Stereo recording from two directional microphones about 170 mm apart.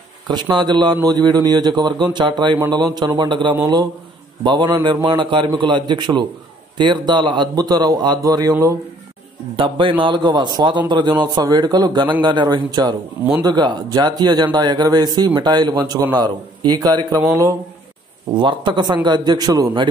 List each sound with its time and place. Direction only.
0.3 s speech: 25° right (ahead or behind)
9.6 s speech: 30° right (ahead or behind)